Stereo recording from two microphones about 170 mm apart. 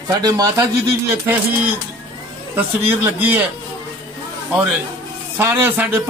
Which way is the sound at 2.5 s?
10° right (ahead or behind).